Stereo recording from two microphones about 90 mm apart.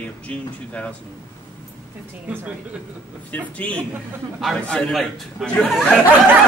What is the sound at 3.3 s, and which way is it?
Speech, 15° left (ahead or behind).